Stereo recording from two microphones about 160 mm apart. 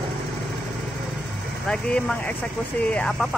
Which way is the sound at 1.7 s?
5° left (ahead or behind).